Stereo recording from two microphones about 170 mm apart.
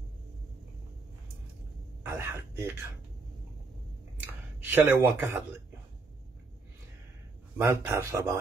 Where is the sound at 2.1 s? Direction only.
15° right (ahead or behind).